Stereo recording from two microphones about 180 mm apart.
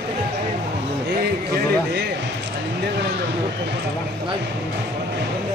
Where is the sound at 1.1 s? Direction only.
65° right (ahead or behind).